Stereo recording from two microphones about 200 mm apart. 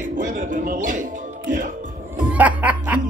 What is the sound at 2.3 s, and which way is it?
Snicker, 10° right (ahead or behind).